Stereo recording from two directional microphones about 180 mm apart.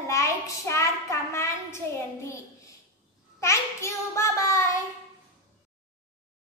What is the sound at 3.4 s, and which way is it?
A child's voice, 15° left (ahead or behind).